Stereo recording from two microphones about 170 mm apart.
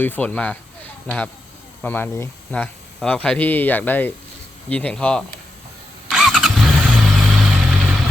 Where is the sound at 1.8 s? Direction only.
10° left (ahead or behind).